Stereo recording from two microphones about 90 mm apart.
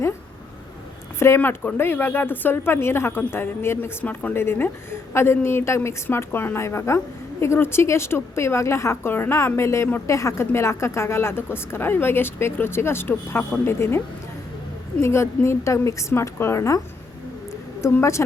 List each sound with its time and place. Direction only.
1.4 s a woman's voice: 20° left (ahead or behind)
15.0 s a woman's voice: 30° left (ahead or behind)
17.5 s a sound: 30° left (ahead or behind)